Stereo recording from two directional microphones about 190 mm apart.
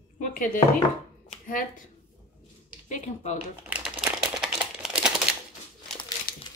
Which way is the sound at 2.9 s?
40° left (ahead or behind).